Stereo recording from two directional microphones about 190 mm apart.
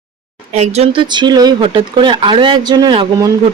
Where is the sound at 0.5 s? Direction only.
35° right (ahead or behind).